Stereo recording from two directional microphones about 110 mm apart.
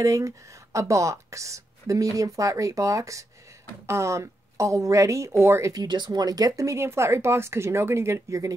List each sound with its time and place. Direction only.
0.0 s speech: 30° right (ahead or behind)